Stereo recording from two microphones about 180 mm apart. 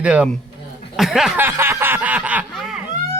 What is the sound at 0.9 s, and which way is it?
Snicker, centre (ahead or behind).